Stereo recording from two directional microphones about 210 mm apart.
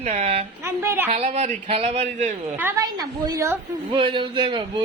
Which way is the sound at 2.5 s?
10° right (ahead or behind).